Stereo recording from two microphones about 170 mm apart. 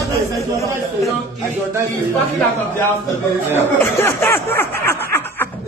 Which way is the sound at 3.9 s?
15° left (ahead or behind).